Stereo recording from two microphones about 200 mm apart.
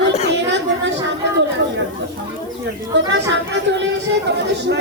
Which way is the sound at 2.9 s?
60° right (ahead or behind).